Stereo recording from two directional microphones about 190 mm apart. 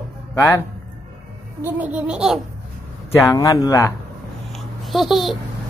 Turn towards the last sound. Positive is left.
turn(degrees=0)  # may be behind; listen again after turning